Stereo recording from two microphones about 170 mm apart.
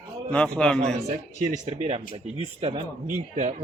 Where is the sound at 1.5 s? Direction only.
40° right (ahead or behind).